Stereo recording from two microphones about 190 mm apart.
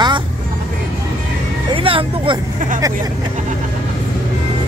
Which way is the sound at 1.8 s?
30° right (ahead or behind).